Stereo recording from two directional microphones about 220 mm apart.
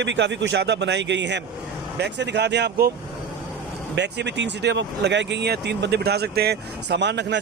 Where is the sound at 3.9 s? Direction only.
50° right (ahead or behind).